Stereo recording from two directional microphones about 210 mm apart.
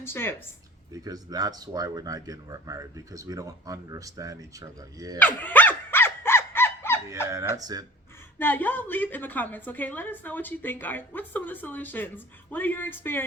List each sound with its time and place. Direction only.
0.0 s a woman's voice: 10° left (ahead or behind)
1.0 s speech: 15° right (ahead or behind)
5.2 s crow: 10° left (ahead or behind)
7.5 s speech: 15° right (ahead or behind)
8.4 s a woman's voice: 10° left (ahead or behind)